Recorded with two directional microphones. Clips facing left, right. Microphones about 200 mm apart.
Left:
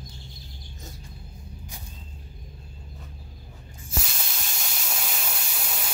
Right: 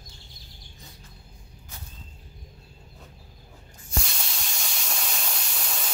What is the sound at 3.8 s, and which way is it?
Steam, 5° left (ahead or behind).